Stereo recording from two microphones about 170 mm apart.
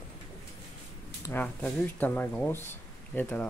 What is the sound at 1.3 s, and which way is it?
Speech, 10° left (ahead or behind).